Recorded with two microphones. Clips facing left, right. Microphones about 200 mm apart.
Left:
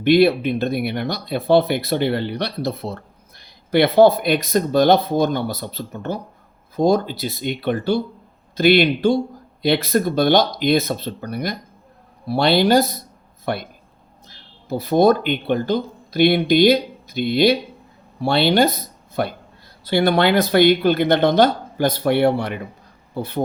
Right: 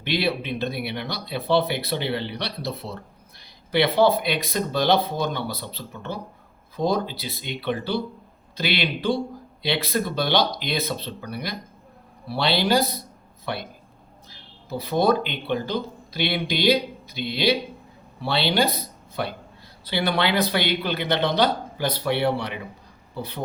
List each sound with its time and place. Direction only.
0.0 s speech: 50° left (ahead or behind)
14.7 s speech: 50° left (ahead or behind)